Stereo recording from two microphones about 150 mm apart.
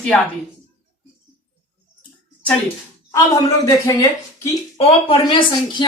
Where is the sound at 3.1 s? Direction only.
20° left (ahead or behind).